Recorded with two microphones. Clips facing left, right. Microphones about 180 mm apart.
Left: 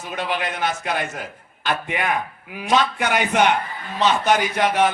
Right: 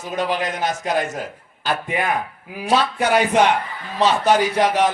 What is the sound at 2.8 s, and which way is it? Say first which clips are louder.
Speech: right 3 dB; 35° right (ahead or behind).